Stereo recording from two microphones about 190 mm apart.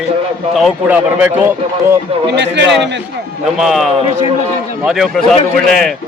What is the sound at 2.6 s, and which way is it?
Speech, 65° right (ahead or behind).